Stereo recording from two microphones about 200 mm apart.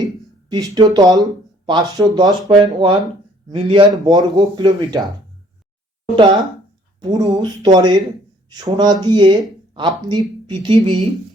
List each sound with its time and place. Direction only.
0.5 s speech: 20° right (ahead or behind)
7.0 s speech: 20° right (ahead or behind)